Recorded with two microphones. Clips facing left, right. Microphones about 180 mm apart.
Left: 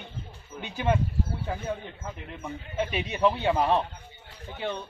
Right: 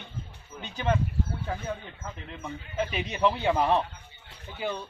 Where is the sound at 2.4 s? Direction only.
5° left (ahead or behind).